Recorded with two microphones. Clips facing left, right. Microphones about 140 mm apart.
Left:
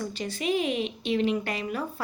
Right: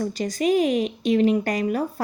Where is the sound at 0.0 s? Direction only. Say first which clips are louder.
Right 7 dB; 40° right (ahead or behind).